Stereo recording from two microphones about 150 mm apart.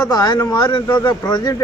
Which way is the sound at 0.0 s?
25° left (ahead or behind).